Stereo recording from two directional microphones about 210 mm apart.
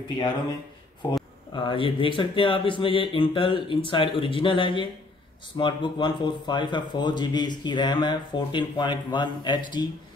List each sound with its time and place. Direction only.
1.5 s speech: 20° left (ahead or behind)